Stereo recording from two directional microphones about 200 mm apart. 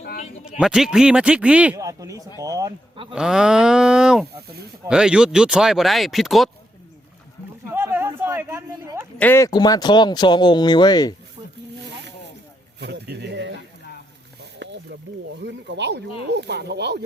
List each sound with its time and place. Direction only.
0.6 s speech: 5° right (ahead or behind)
1.8 s a sound: 15° right (ahead or behind)
3.1 s speech: 5° right (ahead or behind)
7.7 s a sound: 10° right (ahead or behind)
9.1 s speech: 10° left (ahead or behind)
12.8 s speech: 55° right (ahead or behind)
14.6 s snake: 60° right (ahead or behind)
15.4 s speech: 60° right (ahead or behind)